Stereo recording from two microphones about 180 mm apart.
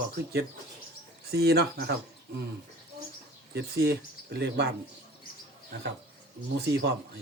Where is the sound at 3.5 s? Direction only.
65° right (ahead or behind).